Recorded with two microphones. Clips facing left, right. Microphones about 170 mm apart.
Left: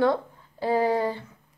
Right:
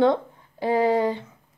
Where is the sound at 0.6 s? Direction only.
15° right (ahead or behind).